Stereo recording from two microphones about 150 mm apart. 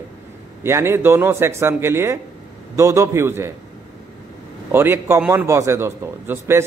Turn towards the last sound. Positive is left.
turn(degrees=-15)  # may be behind; listen again after turning